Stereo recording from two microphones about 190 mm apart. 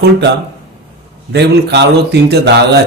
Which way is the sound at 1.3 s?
60° right (ahead or behind).